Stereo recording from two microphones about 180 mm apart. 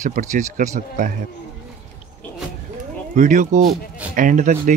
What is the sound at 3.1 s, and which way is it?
Speech, 45° right (ahead or behind).